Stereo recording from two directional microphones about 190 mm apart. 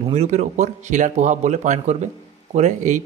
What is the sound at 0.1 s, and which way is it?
Speech, 35° right (ahead or behind).